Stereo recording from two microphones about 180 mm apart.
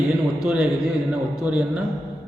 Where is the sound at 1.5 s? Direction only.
5° right (ahead or behind).